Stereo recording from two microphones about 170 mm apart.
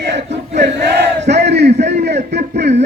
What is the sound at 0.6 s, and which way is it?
Battle cry, 80° right.